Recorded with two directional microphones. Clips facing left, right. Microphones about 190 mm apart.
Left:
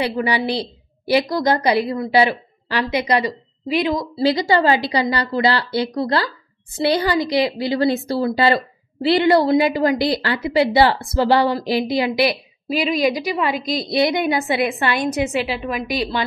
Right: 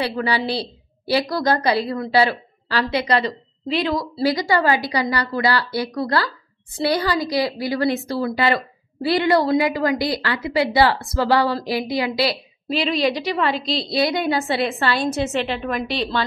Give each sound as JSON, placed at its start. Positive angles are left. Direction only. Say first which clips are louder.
{"t": 0.0, "sound": "a woman's voice", "louder": "left 2 dB", "side_deg": 15}
{"t": 12.6, "sound": "a woman's voice", "louder": "left 2 dB", "side_deg": 10}
{"t": 15.9, "sound": "a woman's voice", "louder": "left 3 dB", "side_deg": 15}